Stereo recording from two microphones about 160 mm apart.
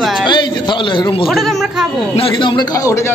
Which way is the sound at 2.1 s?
35° left (ahead or behind).